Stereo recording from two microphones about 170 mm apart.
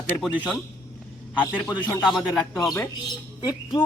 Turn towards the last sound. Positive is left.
turn(degrees=25)  # may be behind; listen again after turning